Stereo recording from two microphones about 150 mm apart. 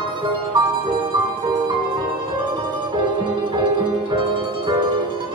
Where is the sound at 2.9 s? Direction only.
30° right (ahead or behind).